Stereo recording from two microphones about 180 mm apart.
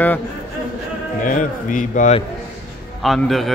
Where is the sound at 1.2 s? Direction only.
45° left (ahead or behind).